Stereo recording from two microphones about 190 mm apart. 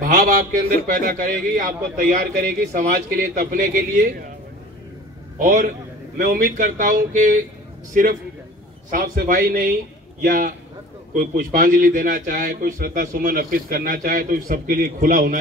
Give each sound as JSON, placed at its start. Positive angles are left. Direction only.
{"t": 0.0, "sound": "a man's voice", "side_deg": -45}
{"t": 5.4, "sound": "a man's voice", "side_deg": -45}